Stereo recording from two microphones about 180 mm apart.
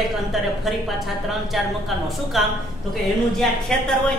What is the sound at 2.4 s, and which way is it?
Speech, centre (ahead or behind).